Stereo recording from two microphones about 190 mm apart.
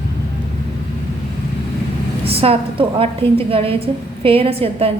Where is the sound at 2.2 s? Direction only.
30° right (ahead or behind).